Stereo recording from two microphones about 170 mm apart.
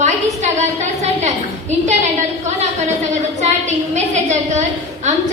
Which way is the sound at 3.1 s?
45° right (ahead or behind).